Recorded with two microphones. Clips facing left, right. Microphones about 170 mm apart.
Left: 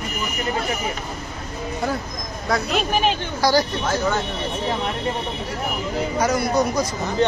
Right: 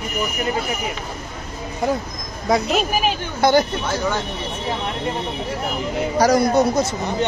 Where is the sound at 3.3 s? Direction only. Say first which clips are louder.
Right 4 dB; 25° right (ahead or behind).